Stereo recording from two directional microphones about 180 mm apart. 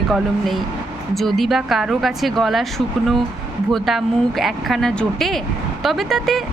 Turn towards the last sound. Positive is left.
turn(degrees=0)  # may be behind; listen again after turning